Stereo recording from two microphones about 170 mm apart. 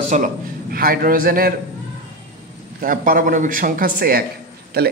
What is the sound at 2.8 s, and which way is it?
Speech, 55° right (ahead or behind).